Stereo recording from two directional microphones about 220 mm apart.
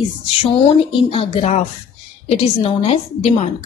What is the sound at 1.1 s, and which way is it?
A woman's voice, 30° left (ahead or behind).